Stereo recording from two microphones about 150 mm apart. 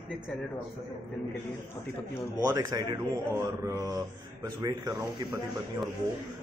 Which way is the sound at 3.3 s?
20° right (ahead or behind).